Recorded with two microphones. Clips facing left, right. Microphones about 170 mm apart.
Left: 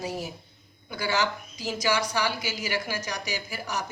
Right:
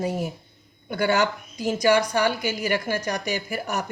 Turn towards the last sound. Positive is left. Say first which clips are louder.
# right 5 dB
turn(degrees=-55)  # may be behind; listen again after turning